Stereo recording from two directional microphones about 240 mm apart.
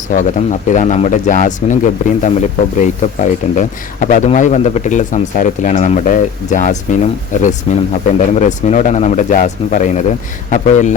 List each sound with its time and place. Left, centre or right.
0.1 s speech: left